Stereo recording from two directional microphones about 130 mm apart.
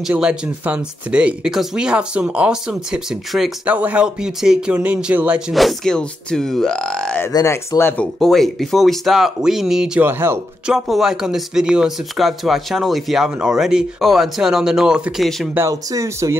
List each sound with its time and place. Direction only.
0.0 s speech: 5° right (ahead or behind)
5.5 s speech: centre (ahead or behind)
7.3 s speech: 25° left (ahead or behind)
8.0 s speech: 5° left (ahead or behind)
10.0 s speech: 20° right (ahead or behind)
10.7 s speech: 5° right (ahead or behind)
15.5 s speech: 25° right (ahead or behind)